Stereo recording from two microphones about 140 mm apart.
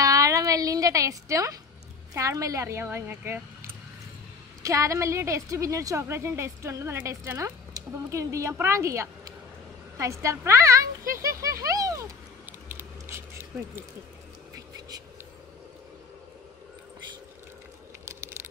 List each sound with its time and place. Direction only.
0.0 s music: 25° right (ahead or behind)
2.1 s a woman's voice: 25° right (ahead or behind)
11.1 s a sound: 25° right (ahead or behind)
12.6 s scissors: 15° right (ahead or behind)
18.0 s crunch: 20° right (ahead or behind)